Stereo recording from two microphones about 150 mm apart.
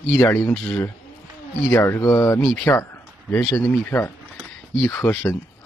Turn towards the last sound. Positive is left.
turn(degrees=15)  # may be behind; listen again after turning